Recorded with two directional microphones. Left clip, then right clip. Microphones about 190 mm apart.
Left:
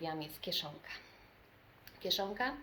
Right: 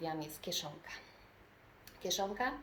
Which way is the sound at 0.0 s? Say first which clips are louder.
Even; 20° left (ahead or behind).